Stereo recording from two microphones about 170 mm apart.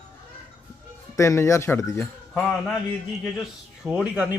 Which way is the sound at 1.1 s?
15° left (ahead or behind).